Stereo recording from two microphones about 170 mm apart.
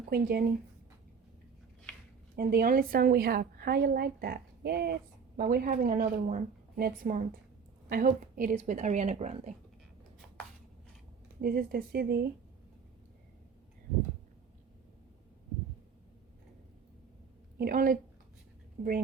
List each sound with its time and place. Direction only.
0.1 s a woman's voice: 60° right (ahead or behind)
2.3 s a woman's voice: 60° right (ahead or behind)
5.4 s a woman's voice: 60° right (ahead or behind); by 9.5 s 40° right (ahead or behind)
11.3 s a woman's voice: 60° right (ahead or behind)
17.6 s a woman's voice: 55° right (ahead or behind)